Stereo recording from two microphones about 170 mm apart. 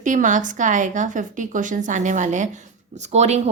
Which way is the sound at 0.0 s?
50° right (ahead or behind).